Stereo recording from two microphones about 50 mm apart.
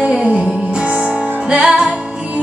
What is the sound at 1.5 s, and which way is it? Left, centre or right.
Music, right.